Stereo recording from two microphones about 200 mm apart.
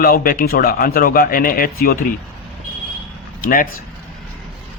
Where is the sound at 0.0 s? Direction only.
45° left (ahead or behind).